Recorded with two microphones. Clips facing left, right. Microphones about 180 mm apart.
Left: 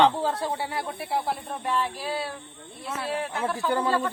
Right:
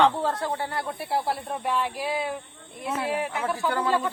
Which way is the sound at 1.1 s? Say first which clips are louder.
Right 2 dB; 10° right (ahead or behind).